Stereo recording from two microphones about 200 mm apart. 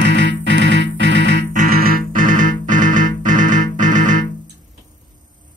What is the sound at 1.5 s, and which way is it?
Music, 45° right (ahead or behind).